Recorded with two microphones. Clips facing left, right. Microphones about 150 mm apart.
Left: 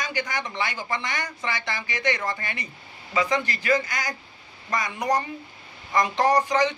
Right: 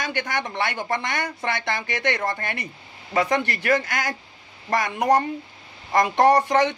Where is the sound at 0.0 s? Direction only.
60° right (ahead or behind).